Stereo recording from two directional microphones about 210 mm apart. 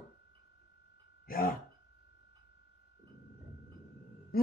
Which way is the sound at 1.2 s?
45° left (ahead or behind).